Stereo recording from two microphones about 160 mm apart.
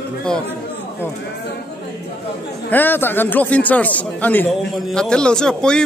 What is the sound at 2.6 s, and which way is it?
A man's voice, 10° left (ahead or behind).